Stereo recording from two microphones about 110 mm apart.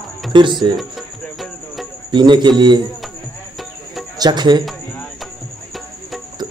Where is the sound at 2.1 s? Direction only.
45° right (ahead or behind).